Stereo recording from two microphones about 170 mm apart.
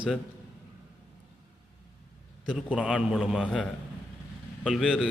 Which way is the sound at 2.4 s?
5° right (ahead or behind).